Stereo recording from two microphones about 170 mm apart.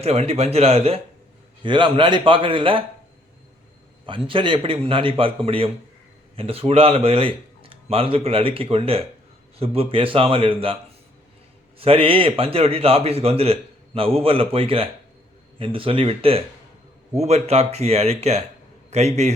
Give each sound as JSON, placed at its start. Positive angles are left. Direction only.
{"t": 0.0, "sound": "a man's voice", "side_deg": -35}
{"t": 4.0, "sound": "a man's voice", "side_deg": -30}
{"t": 11.8, "sound": "a man's voice", "side_deg": -35}